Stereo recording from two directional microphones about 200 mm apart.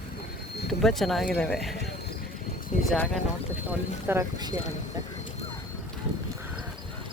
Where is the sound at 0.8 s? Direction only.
Centre (ahead or behind).